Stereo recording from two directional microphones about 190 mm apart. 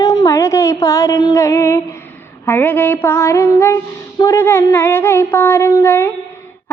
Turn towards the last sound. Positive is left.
turn(degrees=15)  # may be behind; listen again after turning